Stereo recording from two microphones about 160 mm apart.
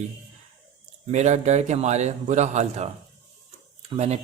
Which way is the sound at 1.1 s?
45° right (ahead or behind).